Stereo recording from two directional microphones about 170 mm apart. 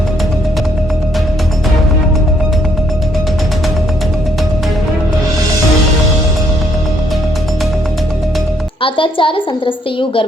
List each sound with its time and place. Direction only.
8.8 s a woman's voice: 30° left (ahead or behind)